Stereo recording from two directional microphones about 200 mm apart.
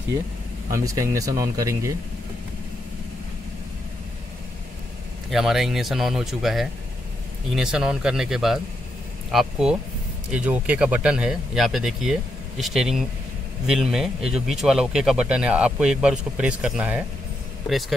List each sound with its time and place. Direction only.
0.7 s speech: 15° right (ahead or behind)
5.3 s speech: centre (ahead or behind)